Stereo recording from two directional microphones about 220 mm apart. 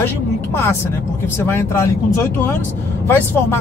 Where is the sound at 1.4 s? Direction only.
10° left (ahead or behind).